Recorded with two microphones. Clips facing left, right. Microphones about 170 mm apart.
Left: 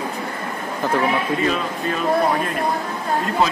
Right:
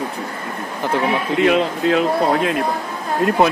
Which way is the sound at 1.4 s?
75° right (ahead or behind).